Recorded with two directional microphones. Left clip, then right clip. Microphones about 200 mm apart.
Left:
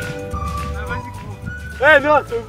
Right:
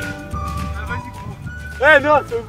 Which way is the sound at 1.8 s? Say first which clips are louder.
Even; 20° right (ahead or behind).